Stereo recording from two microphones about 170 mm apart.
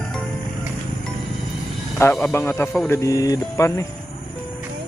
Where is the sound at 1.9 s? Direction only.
15° left (ahead or behind).